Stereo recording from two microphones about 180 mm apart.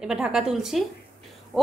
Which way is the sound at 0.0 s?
5° right (ahead or behind).